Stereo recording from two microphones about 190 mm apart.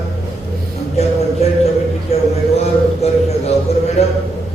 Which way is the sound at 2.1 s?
35° left (ahead or behind).